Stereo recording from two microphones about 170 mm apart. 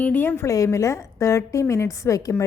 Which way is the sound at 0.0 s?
10° left (ahead or behind).